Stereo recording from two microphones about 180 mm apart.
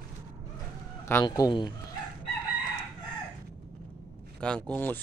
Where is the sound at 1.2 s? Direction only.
25° left (ahead or behind).